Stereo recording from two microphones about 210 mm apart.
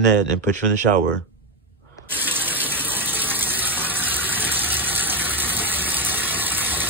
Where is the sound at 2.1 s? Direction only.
10° right (ahead or behind).